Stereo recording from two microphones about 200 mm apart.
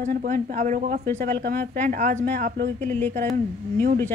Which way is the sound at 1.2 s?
50° right (ahead or behind).